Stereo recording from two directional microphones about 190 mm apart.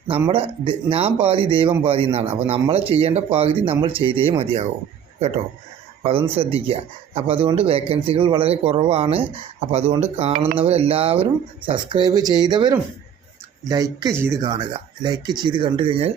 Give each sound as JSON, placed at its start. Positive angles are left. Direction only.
{"t": 0.1, "sound": "speech", "side_deg": -25}
{"t": 6.0, "sound": "speech", "side_deg": -30}